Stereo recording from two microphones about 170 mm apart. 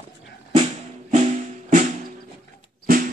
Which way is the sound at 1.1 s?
45° right (ahead or behind).